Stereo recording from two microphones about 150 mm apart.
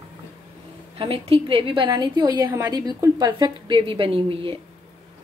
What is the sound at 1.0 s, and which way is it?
A woman's voice, 40° right (ahead or behind).